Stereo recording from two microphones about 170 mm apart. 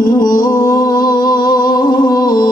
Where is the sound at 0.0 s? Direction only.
25° left (ahead or behind).